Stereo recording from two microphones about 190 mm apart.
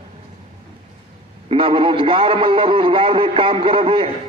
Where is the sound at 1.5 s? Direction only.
25° right (ahead or behind).